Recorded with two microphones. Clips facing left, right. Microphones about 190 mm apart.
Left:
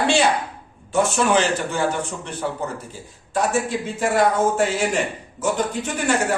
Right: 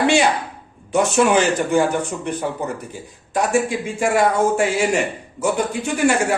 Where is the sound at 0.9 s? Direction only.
15° right (ahead or behind).